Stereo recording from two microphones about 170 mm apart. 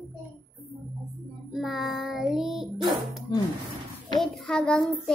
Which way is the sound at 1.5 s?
Centre (ahead or behind).